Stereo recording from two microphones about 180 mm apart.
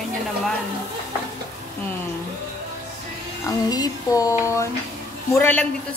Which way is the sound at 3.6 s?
20° left (ahead or behind).